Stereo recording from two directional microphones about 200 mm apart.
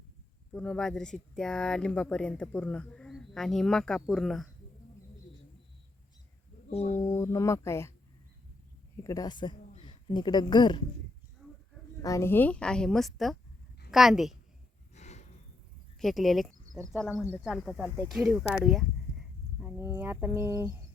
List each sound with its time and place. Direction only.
0.5 s speech: 5° left (ahead or behind)
6.7 s speech: 35° left (ahead or behind)
7.1 s speech: 15° left (ahead or behind)
9.0 s speech: 15° left (ahead or behind)
11.4 s a sound: 5° right (ahead or behind)
12.0 s speech: 15° left (ahead or behind); by 14.3 s centre (ahead or behind)
14.9 s snort: 35° left (ahead or behind)
16.0 s speech: centre (ahead or behind)